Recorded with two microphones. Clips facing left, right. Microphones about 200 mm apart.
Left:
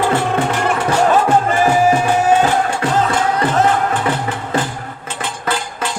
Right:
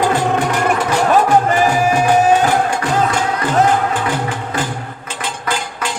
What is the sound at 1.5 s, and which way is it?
Music, 15° right (ahead or behind).